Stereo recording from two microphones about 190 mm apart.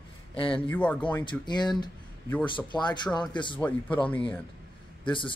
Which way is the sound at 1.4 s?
25° left (ahead or behind).